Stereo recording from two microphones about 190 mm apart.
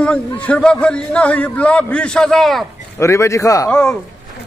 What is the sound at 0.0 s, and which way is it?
A man's voice, 5° left (ahead or behind).